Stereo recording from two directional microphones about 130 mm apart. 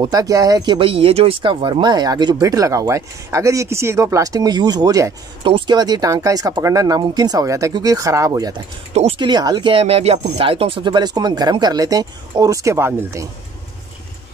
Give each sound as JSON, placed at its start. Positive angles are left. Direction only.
{"t": 0.0, "sound": "speech", "side_deg": -25}
{"t": 8.9, "sound": "speech", "side_deg": -50}
{"t": 9.3, "sound": "speech", "side_deg": -30}